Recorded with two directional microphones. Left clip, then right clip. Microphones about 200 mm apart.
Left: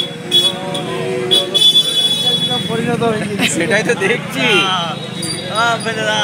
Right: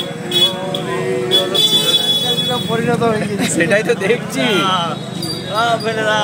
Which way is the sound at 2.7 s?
30° left (ahead or behind).